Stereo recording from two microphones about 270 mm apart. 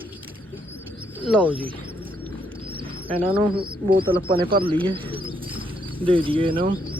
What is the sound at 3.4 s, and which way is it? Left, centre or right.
Speech, centre.